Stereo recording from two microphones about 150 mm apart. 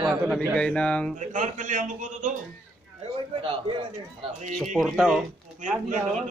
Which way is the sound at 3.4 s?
35° right (ahead or behind).